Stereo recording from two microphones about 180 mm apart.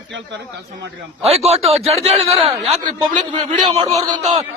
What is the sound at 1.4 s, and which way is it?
Speech, 35° right (ahead or behind).